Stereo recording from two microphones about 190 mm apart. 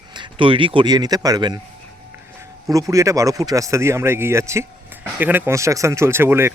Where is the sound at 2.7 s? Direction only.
15° right (ahead or behind).